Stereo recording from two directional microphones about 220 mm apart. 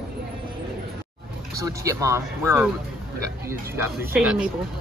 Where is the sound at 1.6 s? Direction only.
15° right (ahead or behind).